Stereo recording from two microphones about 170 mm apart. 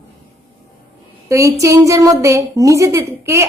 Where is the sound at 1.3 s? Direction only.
15° right (ahead or behind).